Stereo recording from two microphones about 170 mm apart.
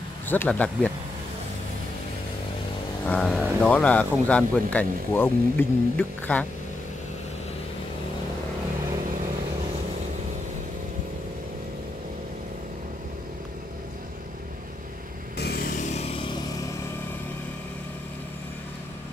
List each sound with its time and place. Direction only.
0.3 s speech: 10° left (ahead or behind)
3.1 s speech: 5° left (ahead or behind)
15.3 s vehicle: 70° left (ahead or behind)
15.8 s a sound: 40° left (ahead or behind)